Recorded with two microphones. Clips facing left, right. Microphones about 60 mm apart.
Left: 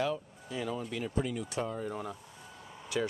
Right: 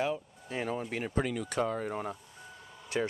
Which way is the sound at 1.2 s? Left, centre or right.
Right.